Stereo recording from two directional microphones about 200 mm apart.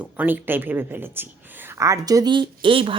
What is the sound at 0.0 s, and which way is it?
Speech, 10° right (ahead or behind).